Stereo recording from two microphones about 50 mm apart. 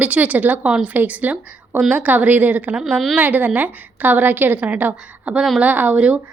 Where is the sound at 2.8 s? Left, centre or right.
Centre.